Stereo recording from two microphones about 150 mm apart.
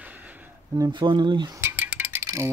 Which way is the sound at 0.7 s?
30° right (ahead or behind).